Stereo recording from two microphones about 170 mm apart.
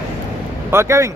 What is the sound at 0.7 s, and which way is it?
Speech, 15° right (ahead or behind).